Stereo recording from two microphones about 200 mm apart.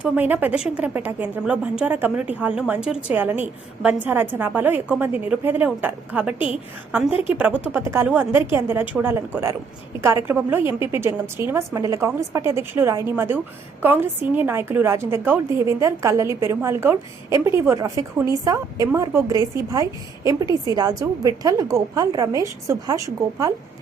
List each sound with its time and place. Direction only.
0.0 s a woman's voice: 10° right (ahead or behind)